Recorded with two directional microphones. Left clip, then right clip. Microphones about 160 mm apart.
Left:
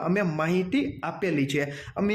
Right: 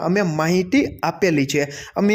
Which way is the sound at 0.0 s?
30° right (ahead or behind).